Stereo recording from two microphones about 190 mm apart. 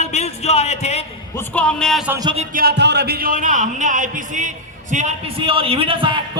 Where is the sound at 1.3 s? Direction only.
5° left (ahead or behind).